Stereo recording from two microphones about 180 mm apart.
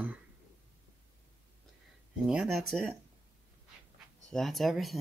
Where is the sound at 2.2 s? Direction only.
5° right (ahead or behind).